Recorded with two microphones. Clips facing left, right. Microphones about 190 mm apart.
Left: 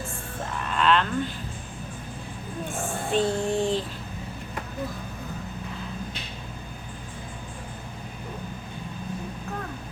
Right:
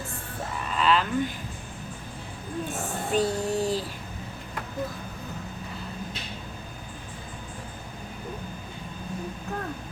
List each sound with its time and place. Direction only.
0.5 s a sound: 5° right (ahead or behind)
3.1 s music: 5° right (ahead or behind)
3.4 s child singing: 5° right (ahead or behind)